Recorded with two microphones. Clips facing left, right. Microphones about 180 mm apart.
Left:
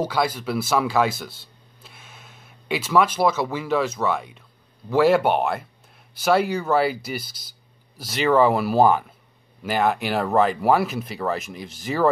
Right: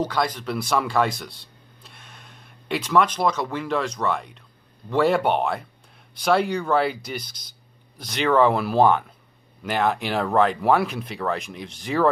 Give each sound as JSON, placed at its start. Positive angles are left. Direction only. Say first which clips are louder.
{"t": 0.0, "sound": "speech", "louder": "left 1 dB", "side_deg": 5}